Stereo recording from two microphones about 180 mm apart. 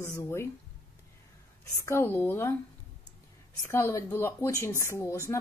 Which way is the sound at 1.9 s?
15° left (ahead or behind).